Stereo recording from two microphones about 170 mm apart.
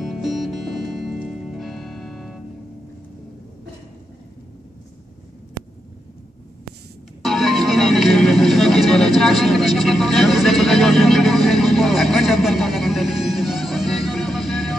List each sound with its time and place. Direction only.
0.0 s music: centre (ahead or behind)
7.2 s music: centre (ahead or behind)